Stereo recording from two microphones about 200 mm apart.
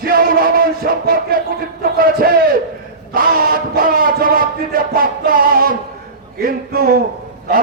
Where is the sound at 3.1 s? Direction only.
45° right (ahead or behind).